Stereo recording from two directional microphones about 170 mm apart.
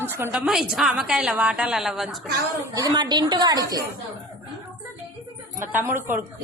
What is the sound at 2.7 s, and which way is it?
A woman's voice, 20° right (ahead or behind).